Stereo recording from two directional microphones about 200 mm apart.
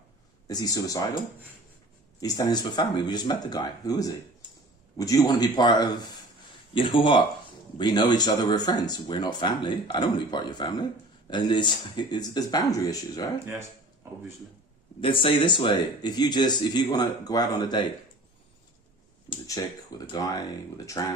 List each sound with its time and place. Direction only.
0.4 s speech: 20° left (ahead or behind)
2.2 s speech: 20° left (ahead or behind)
13.4 s speech: 10° right (ahead or behind)
15.0 s speech: 25° left (ahead or behind)
20.1 s speech: 20° left (ahead or behind)